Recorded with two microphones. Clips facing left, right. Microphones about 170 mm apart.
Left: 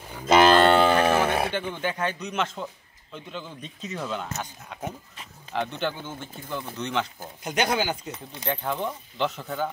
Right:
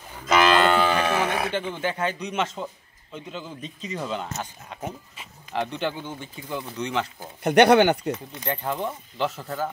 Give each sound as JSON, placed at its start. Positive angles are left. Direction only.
{"t": 0.2, "sound": "cattle", "side_deg": 30}
{"t": 1.6, "sound": "a man's voice", "side_deg": -5}
{"t": 7.4, "sound": "speech", "side_deg": -65}
{"t": 8.5, "sound": "speech", "side_deg": -10}